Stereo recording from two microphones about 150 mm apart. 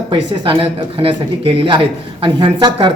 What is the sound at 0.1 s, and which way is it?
Speech, 30° right (ahead or behind).